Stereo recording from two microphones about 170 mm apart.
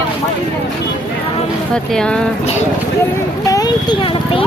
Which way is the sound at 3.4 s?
20° left (ahead or behind).